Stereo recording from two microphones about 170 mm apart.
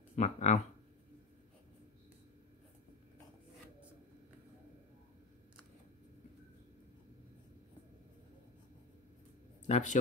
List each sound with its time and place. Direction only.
0.1 s speech: 40° left (ahead or behind)
9.7 s speech: 45° left (ahead or behind)